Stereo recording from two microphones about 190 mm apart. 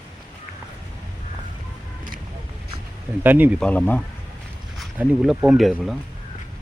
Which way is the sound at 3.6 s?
5° left (ahead or behind).